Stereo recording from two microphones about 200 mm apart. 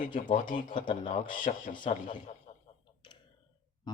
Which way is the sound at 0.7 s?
25° left (ahead or behind).